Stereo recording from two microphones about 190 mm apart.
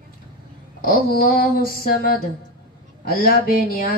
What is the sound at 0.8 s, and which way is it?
Speech, 50° left (ahead or behind).